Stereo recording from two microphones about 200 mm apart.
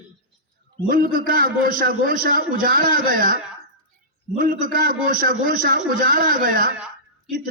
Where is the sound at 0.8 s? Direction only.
45° right (ahead or behind).